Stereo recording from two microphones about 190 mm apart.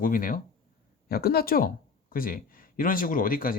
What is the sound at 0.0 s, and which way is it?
Speech, 45° left (ahead or behind).